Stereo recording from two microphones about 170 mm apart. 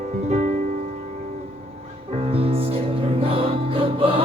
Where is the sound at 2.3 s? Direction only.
35° right (ahead or behind).